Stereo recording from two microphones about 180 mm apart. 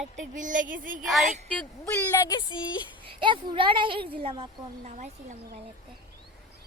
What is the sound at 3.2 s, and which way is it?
A woman's voice, 25° right (ahead or behind).